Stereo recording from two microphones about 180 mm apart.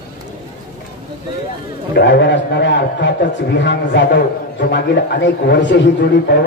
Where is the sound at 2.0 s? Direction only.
70° left (ahead or behind).